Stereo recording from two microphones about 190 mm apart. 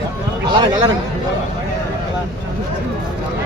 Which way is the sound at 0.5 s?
25° right (ahead or behind).